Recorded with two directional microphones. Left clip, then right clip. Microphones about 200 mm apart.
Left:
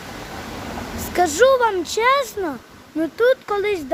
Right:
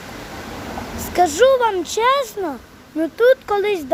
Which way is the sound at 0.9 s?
5° left (ahead or behind).